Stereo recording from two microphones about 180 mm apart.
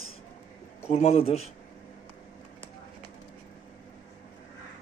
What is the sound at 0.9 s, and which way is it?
Speech, 35° left (ahead or behind).